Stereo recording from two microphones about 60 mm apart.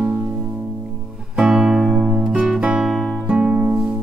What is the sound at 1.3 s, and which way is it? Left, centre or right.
Music, centre.